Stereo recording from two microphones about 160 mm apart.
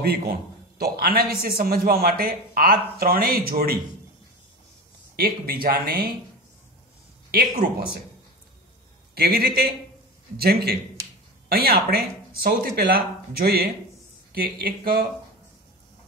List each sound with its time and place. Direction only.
0.0 s a man's voice: 70° right (ahead or behind)
5.1 s a man's voice: 70° right (ahead or behind)
7.2 s a man's voice: 70° right (ahead or behind)
9.1 s a man's voice: 70° right (ahead or behind)